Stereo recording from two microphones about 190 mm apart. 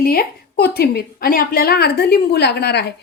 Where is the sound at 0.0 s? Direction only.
50° left (ahead or behind).